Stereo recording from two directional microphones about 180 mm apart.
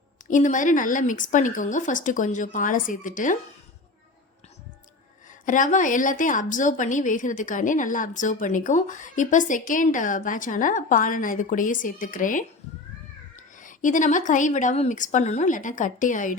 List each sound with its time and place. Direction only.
0.3 s a woman's voice: 45° left (ahead or behind)
5.3 s a woman's voice: 45° left (ahead or behind)